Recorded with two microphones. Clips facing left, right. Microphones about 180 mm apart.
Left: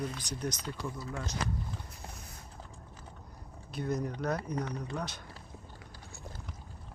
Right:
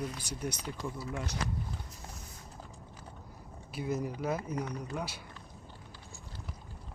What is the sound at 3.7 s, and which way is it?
Speech, 5° right (ahead or behind).